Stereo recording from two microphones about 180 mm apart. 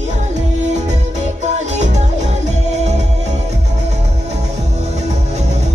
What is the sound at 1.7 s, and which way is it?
Music, 40° right (ahead or behind).